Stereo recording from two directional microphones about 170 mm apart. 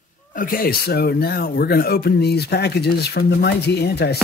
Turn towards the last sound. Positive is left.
turn(degrees=70)  # may be behind; listen again after turning